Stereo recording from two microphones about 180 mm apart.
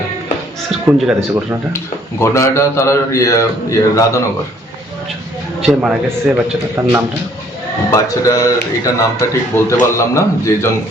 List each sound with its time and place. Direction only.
0.9 s speech: 10° right (ahead or behind)
1.7 s speech: 15° left (ahead or behind)
5.6 s a man's voice: 5° right (ahead or behind)
7.9 s a man's voice: 15° left (ahead or behind)